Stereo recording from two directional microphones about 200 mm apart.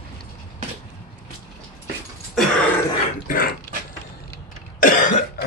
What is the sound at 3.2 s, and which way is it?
Mechanisms, 45° left (ahead or behind).